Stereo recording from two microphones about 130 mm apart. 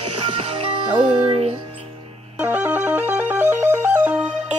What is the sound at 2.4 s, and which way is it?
Music, 15° right (ahead or behind).